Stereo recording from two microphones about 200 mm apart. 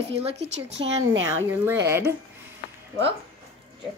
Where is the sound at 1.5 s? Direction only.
10° right (ahead or behind).